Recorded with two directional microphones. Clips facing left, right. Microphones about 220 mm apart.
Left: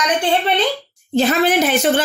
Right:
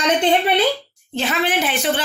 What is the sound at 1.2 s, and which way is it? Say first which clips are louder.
Speech: left 6 dB; 40° left (ahead or behind).